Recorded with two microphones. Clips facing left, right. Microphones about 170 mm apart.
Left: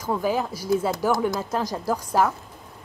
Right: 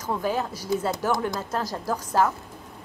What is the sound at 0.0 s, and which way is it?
A woman's voice, 10° left (ahead or behind).